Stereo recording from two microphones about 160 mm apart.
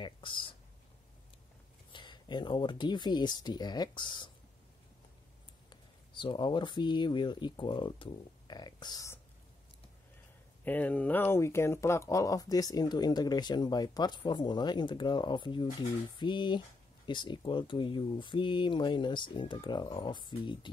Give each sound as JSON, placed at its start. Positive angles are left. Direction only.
{"t": 0.0, "sound": "a sound", "side_deg": 30}
{"t": 1.9, "sound": "speech", "side_deg": 30}
{"t": 5.7, "sound": "speech", "side_deg": 30}
{"t": 10.6, "sound": "speech", "side_deg": 10}